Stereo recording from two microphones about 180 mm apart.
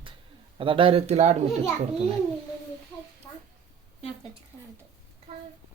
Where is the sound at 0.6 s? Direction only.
30° right (ahead or behind).